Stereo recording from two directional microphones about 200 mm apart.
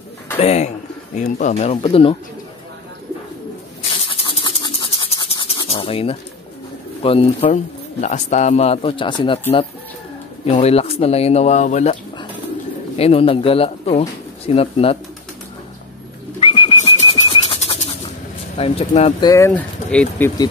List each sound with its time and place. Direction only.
0.4 s speech: 35° left (ahead or behind)
4.1 s rub: 25° left (ahead or behind)
7.0 s speech: 30° left (ahead or behind)
10.4 s speech: 30° left (ahead or behind)
16.3 s bird: 25° left (ahead or behind)
18.6 s speech: 30° left (ahead or behind)
19.2 s speech: 15° left (ahead or behind)